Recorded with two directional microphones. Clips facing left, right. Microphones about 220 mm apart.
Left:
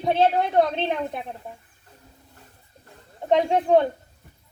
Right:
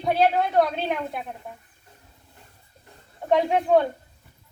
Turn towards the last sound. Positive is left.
turn(degrees=20)  # may be behind; listen again after turning